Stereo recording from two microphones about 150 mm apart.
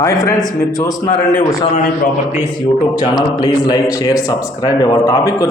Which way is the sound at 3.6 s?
25° left (ahead or behind).